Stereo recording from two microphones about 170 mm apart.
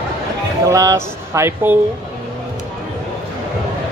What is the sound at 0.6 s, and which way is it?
Speech, 20° right (ahead or behind).